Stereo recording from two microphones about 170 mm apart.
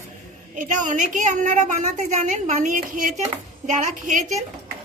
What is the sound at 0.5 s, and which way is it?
A woman's voice, 50° right (ahead or behind).